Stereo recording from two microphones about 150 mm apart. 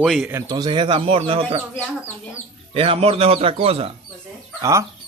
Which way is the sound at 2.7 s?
40° right (ahead or behind).